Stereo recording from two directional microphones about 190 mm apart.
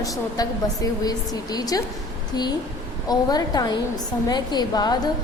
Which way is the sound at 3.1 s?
20° left (ahead or behind).